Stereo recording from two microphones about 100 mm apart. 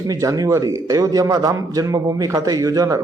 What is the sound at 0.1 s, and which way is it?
A man's voice, 35° right (ahead or behind).